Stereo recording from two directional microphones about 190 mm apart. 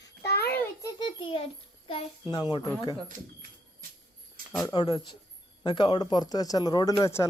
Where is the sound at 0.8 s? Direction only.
25° left (ahead or behind).